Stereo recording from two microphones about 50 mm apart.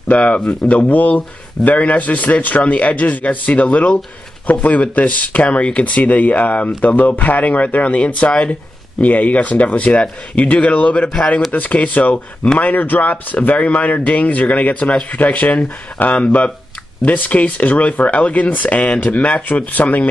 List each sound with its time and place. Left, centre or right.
0.1 s speech: left